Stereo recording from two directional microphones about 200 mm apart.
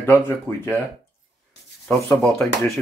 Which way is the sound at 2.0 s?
5° left (ahead or behind).